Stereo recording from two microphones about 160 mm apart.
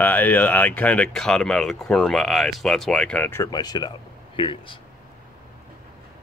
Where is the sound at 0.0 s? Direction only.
10° left (ahead or behind); by 4.7 s 30° left (ahead or behind).